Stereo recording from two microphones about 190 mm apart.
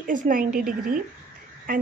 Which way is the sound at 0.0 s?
45° right (ahead or behind).